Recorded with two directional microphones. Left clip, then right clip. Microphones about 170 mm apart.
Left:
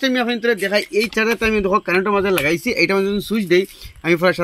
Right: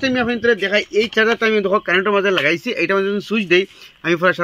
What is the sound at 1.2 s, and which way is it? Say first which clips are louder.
Speech: right 4 dB; 65° left (ahead or behind).